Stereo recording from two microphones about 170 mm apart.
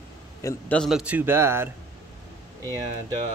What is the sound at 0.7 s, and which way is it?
A man's voice, centre (ahead or behind).